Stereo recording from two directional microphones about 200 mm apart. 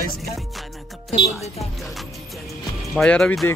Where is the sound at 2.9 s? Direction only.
5° left (ahead or behind).